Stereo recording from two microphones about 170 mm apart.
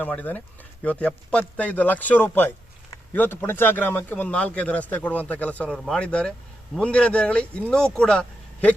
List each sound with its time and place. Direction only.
0.0 s speech: 10° left (ahead or behind)